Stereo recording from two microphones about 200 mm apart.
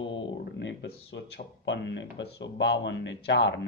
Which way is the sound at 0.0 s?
65° left (ahead or behind).